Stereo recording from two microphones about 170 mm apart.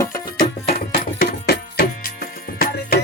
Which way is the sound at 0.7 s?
60° left (ahead or behind).